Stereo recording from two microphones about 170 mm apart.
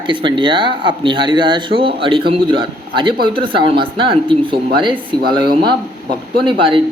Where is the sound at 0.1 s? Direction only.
30° right (ahead or behind).